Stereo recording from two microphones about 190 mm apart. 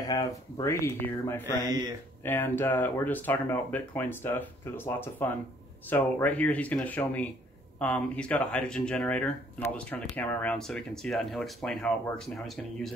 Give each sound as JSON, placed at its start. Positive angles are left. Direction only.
{"t": 0.0, "sound": "speech", "side_deg": 20}